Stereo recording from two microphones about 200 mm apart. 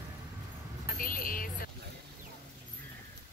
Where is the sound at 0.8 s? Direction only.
45° left (ahead or behind).